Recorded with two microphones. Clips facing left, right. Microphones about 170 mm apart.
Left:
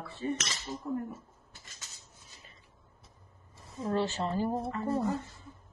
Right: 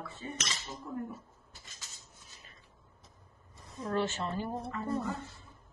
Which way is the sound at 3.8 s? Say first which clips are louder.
Left 2 dB; 30° left (ahead or behind).